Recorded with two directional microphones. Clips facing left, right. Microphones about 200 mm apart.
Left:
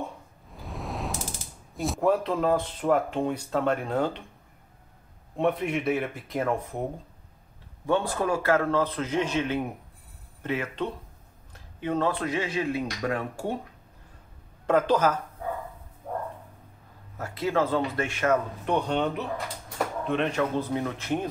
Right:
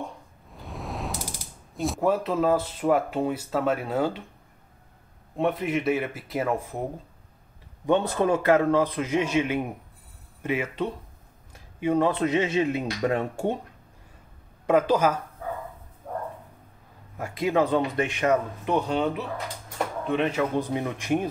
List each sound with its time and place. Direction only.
0.5 s mechanisms: centre (ahead or behind)
5.3 s speech: centre (ahead or behind)
7.8 s a man's voice: 20° right (ahead or behind)
14.7 s a man's voice: 10° right (ahead or behind)
17.2 s a man's voice: 15° right (ahead or behind)
18.9 s a man's voice: 5° right (ahead or behind)